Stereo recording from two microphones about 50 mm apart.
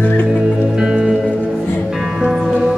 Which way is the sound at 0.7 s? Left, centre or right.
Centre.